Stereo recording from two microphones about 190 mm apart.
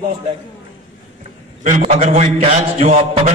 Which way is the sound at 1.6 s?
40° right (ahead or behind).